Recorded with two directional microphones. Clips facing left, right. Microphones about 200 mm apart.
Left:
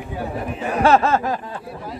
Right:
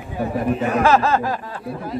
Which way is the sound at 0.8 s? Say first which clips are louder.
Left 2 dB; 25° left (ahead or behind).